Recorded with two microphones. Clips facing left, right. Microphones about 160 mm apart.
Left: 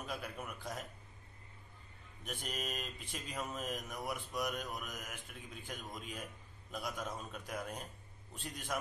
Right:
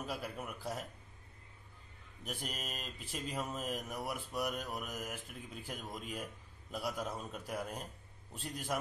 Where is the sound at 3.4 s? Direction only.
5° right (ahead or behind).